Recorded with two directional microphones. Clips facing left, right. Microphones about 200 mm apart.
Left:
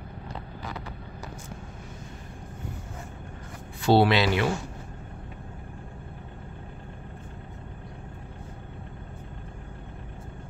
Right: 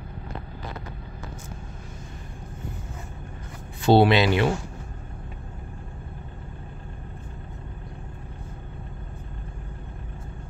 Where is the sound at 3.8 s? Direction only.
20° right (ahead or behind).